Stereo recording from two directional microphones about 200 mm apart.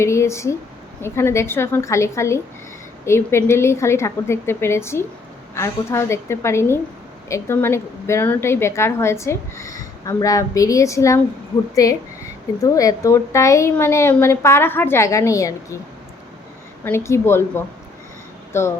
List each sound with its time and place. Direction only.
0.0 s a woman's voice: 15° left (ahead or behind)
16.8 s a woman's voice: 10° left (ahead or behind)